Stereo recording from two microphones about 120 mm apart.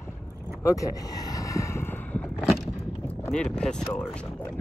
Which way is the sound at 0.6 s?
30° left (ahead or behind).